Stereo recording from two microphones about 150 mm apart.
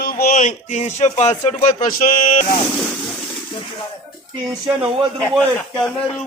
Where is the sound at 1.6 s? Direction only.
65° left (ahead or behind).